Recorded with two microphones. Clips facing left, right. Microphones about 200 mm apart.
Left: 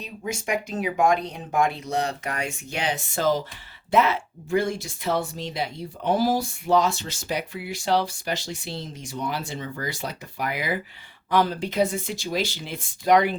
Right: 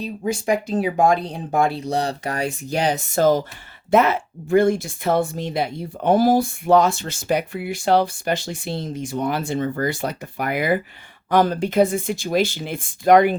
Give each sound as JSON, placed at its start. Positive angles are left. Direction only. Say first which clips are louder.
{"t": 0.0, "sound": "speech", "louder": "right 7 dB", "side_deg": -35}